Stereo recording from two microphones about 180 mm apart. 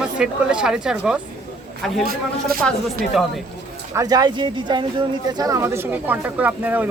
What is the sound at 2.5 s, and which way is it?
Speech, 55° right (ahead or behind).